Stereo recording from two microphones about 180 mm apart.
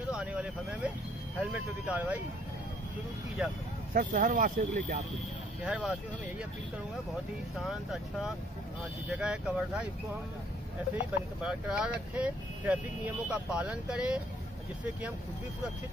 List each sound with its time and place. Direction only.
0.2 s vehicle: 5° right (ahead or behind)
1.4 s speech: 10° right (ahead or behind)
3.4 s speech: 5° right (ahead or behind)
3.9 s speech: 50° right (ahead or behind)
5.6 s speech: 5° right (ahead or behind)
7.5 s speech: centre (ahead or behind)
11.4 s speech: 5° right (ahead or behind)